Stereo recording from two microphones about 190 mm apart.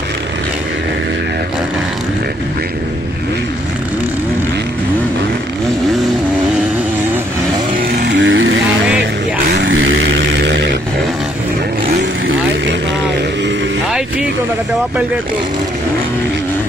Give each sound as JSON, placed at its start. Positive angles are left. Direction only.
{"t": 8.1, "sound": "vehicle", "side_deg": -75}
{"t": 9.5, "sound": "vehicle", "side_deg": -75}